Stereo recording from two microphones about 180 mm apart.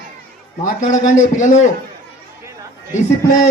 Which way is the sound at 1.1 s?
45° left (ahead or behind).